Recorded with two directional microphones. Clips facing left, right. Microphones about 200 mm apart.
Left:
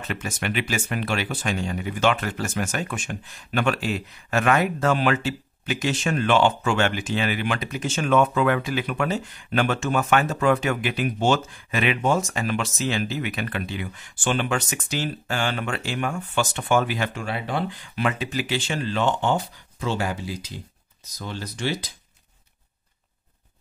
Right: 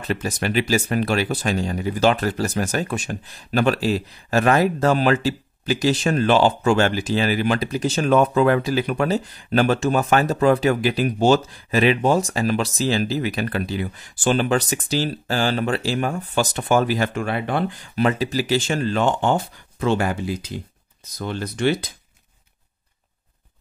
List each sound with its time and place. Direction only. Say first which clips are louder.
0.0 s speech: right 5 dB; 35° right (ahead or behind)
17.1 s speech: right 5 dB; 55° right (ahead or behind)
17.9 s speech: right 5 dB; 40° right (ahead or behind); by 21.9 s 55° right (ahead or behind)